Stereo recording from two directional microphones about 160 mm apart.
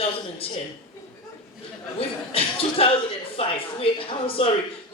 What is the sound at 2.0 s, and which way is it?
Speech, 35° left (ahead or behind).